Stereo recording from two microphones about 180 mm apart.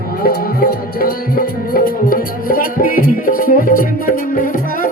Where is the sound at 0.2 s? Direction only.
55° left (ahead or behind).